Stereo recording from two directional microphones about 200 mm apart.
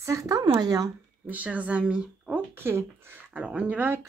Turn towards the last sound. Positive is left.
turn(degrees=-10)  # may be behind; listen again after turning